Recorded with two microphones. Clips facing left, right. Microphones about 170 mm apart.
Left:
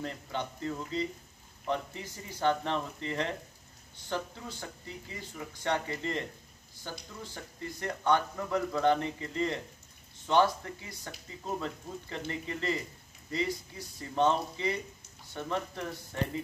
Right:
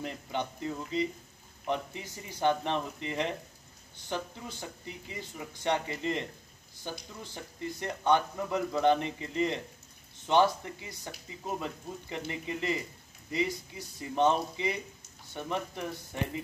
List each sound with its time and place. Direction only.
0.0 s speech: 15° right (ahead or behind)